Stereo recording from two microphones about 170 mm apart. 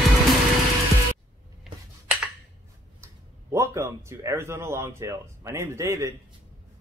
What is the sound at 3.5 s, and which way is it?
A man's voice, 15° right (ahead or behind).